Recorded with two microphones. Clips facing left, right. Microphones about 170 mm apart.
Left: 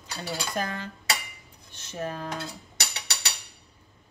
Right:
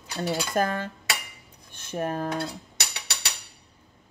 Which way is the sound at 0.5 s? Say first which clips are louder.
Right 6 dB; 50° right (ahead or behind).